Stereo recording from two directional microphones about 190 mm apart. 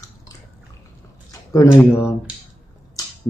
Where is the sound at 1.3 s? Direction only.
15° left (ahead or behind).